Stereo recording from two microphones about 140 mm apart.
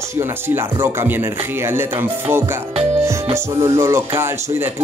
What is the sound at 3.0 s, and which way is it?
Speech, 20° right (ahead or behind).